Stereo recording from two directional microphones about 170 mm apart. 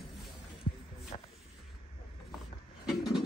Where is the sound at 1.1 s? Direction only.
45° left (ahead or behind).